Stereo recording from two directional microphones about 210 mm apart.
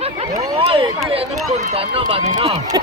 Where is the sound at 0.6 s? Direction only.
25° right (ahead or behind).